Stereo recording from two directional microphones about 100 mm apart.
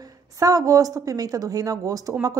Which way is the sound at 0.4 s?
35° right (ahead or behind).